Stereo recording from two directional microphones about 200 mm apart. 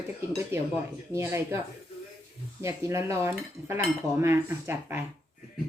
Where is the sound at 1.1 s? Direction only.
15° right (ahead or behind).